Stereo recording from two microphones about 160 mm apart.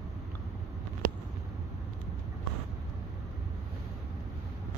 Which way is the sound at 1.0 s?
65° right (ahead or behind).